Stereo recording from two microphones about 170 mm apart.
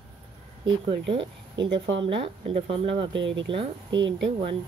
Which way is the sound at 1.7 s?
90° right.